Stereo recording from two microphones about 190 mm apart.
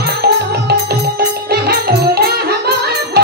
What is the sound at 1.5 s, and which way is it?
Music, 55° right (ahead or behind).